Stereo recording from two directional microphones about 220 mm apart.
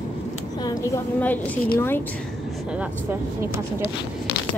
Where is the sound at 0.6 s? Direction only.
10° left (ahead or behind).